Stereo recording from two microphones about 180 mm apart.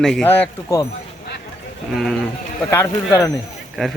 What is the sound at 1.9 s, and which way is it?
Speech, centre (ahead or behind).